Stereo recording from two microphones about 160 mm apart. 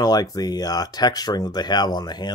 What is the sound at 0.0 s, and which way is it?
Speech, 25° left (ahead or behind).